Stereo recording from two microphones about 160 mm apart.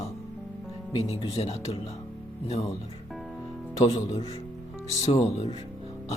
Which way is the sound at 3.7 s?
40° left (ahead or behind).